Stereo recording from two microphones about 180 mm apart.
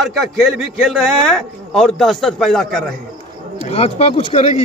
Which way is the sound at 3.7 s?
35° left (ahead or behind).